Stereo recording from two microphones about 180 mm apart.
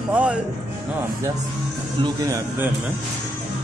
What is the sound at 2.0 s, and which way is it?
Speech, 15° right (ahead or behind).